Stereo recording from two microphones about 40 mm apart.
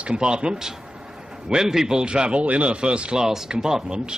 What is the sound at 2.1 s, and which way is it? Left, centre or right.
Speech, right.